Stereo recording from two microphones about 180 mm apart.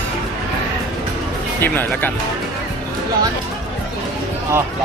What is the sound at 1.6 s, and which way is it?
Speech, 10° left (ahead or behind).